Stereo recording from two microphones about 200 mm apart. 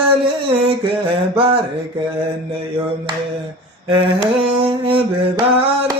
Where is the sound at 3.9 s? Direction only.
25° right (ahead or behind).